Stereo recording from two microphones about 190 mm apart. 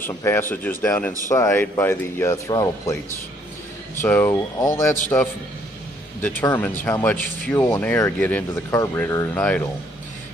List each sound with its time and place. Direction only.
0.0 s speech: 15° left (ahead or behind)
4.0 s speech: 15° left (ahead or behind)
6.4 s speech: 10° left (ahead or behind)